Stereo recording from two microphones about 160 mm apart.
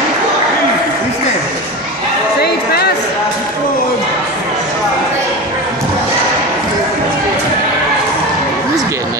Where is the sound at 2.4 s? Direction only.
85° left.